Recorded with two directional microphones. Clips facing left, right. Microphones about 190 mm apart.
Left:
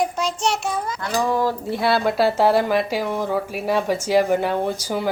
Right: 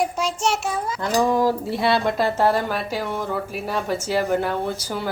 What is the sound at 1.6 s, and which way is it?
Speech, centre (ahead or behind).